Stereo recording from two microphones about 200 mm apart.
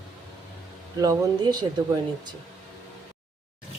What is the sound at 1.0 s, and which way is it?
Speech, 20° right (ahead or behind).